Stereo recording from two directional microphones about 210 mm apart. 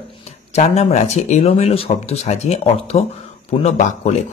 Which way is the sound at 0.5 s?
30° left (ahead or behind).